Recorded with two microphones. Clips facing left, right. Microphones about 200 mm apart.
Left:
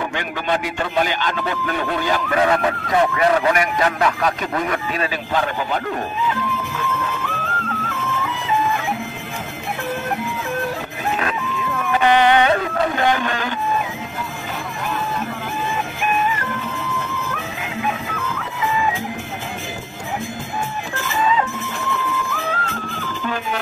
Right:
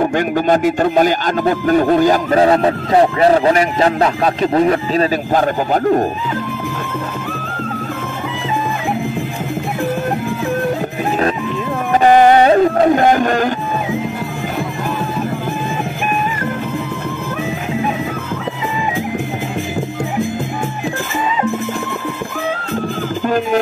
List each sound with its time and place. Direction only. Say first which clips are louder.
0.0 s speech: right 10 dB; 45° right (ahead or behind)
5.3 s a man's voice: right 7 dB; 45° right (ahead or behind)
11.9 s a sound: right 6 dB; 40° right (ahead or behind)
23.2 s music: right 10 dB; 45° right (ahead or behind)